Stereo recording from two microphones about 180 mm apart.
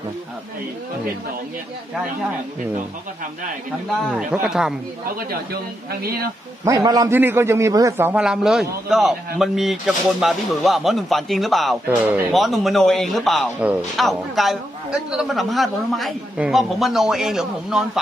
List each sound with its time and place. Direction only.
4.1 s a man's voice: 5° right (ahead or behind)
5.9 s speech: 60° right (ahead or behind)
6.6 s a man's voice: 20° right (ahead or behind)
8.1 s a man's voice: 5° right (ahead or behind)